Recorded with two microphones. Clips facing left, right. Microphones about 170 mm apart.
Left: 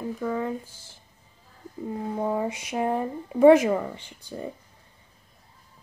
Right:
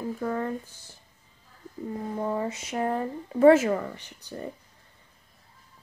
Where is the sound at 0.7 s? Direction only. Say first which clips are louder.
Even; 90° left.